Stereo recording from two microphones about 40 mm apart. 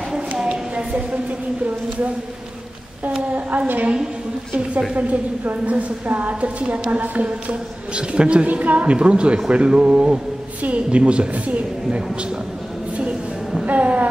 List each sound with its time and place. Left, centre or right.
0.4 s a sound: right
3.3 s a woman's voice: right
4.9 s speech: right
6.4 s speech: right
8.5 s speech: right
13.7 s speech: right